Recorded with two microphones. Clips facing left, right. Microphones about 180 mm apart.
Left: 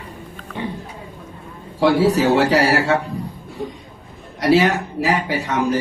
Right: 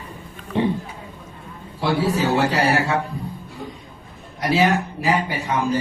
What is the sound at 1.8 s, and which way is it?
A man's voice, 90° left.